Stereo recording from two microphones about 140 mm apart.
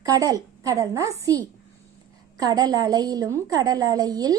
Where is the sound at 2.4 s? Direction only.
30° right (ahead or behind).